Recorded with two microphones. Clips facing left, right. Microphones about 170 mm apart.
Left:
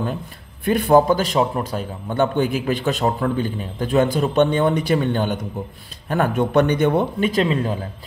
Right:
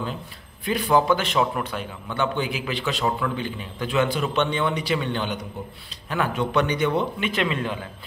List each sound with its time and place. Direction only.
0.7 s a man's voice: 50° left (ahead or behind); by 7.8 s 35° left (ahead or behind)